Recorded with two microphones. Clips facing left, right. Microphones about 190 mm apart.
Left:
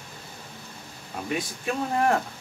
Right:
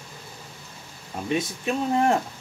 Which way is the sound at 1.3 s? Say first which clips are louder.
Right 3 dB; 20° right (ahead or behind).